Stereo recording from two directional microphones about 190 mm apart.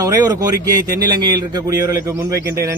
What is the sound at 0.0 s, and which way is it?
A man's voice, 20° right (ahead or behind).